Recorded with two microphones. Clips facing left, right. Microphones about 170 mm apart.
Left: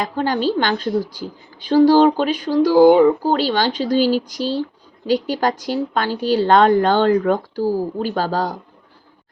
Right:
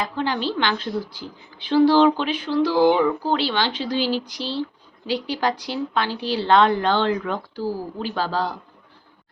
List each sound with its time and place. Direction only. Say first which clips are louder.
0.0 s a woman's voice: left 5 dB; 45° left (ahead or behind)